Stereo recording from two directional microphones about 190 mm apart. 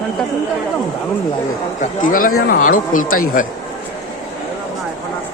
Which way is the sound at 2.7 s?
90° left.